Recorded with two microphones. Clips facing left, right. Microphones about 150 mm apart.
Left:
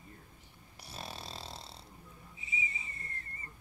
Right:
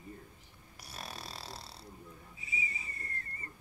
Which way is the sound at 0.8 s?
25° left (ahead or behind).